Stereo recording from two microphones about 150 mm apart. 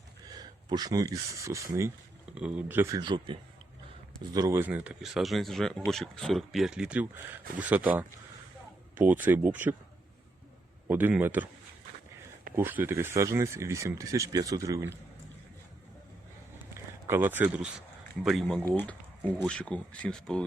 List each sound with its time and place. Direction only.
0.3 s speech: 25° right (ahead or behind)
2.3 s speech: 10° right (ahead or behind)
3.0 s a man's voice: 30° right (ahead or behind); by 9.7 s 10° right (ahead or behind)
10.8 s speech: 10° right (ahead or behind)
12.5 s speech: 15° right (ahead or behind)
16.7 s speech: 15° right (ahead or behind); by 20.4 s 5° left (ahead or behind)